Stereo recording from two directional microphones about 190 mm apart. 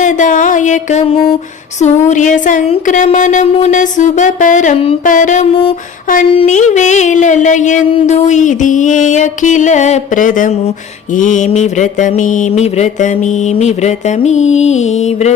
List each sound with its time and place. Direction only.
0.0 s mantra: 40° left (ahead or behind)